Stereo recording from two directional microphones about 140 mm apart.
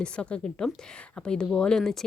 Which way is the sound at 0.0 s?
5° left (ahead or behind).